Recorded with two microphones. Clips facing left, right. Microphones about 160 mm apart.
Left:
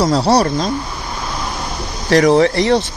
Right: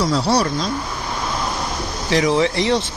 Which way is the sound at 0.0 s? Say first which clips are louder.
Left 5 dB; 35° left (ahead or behind).